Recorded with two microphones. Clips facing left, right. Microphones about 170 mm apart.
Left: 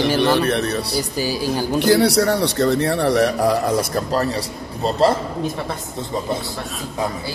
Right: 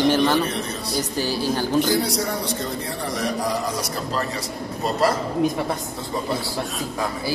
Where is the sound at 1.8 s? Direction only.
70° left (ahead or behind).